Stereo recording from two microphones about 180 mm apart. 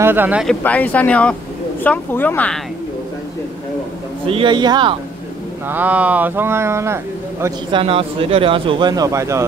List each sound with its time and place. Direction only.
0.0 s speech: 10° right (ahead or behind)
0.7 s speech: 10° left (ahead or behind)
4.3 s speech: 30° right (ahead or behind)
5.7 s speech: 10° right (ahead or behind)
7.7 s speech: 30° right (ahead or behind)